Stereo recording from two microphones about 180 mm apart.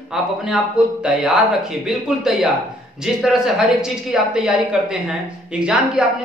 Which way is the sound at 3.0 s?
Centre (ahead or behind).